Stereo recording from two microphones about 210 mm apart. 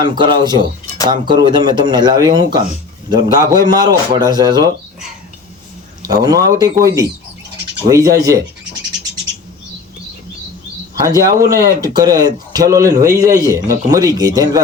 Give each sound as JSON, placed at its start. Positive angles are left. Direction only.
{"t": 0.0, "sound": "speech", "side_deg": -20}
{"t": 6.1, "sound": "speech", "side_deg": -20}
{"t": 10.9, "sound": "speech", "side_deg": -15}